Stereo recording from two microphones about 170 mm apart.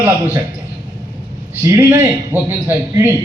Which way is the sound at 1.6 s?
15° right (ahead or behind).